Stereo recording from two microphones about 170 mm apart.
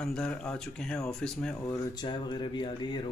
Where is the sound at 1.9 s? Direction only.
30° left (ahead or behind).